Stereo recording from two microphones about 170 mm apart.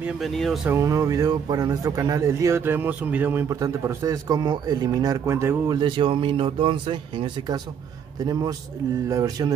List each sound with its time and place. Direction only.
0.0 s speech: centre (ahead or behind)
0.7 s speech: 20° right (ahead or behind)
5.8 s speech: 30° right (ahead or behind)